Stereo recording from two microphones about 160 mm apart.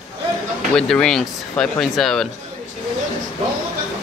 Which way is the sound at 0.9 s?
5° left (ahead or behind).